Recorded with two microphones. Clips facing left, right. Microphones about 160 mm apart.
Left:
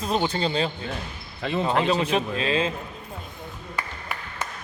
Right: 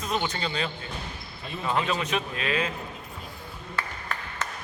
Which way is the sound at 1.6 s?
30° left (ahead or behind).